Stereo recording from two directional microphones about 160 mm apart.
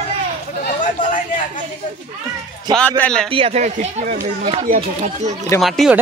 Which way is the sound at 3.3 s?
40° right (ahead or behind).